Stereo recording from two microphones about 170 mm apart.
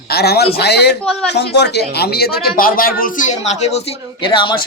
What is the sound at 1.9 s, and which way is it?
Speech, 70° left (ahead or behind).